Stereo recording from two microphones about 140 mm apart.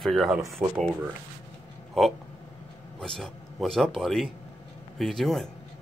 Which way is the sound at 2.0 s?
Centre (ahead or behind).